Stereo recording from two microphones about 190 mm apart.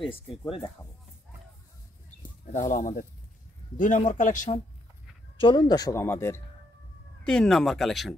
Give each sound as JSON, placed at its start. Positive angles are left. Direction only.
{"t": 0.0, "sound": "speech", "side_deg": 0}
{"t": 2.7, "sound": "speech", "side_deg": 45}
{"t": 5.4, "sound": "speech", "side_deg": 25}
{"t": 7.2, "sound": "speech", "side_deg": 5}